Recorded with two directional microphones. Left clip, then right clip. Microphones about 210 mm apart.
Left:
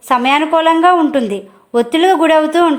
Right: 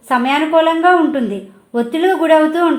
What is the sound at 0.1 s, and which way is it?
A woman's voice, 45° left (ahead or behind).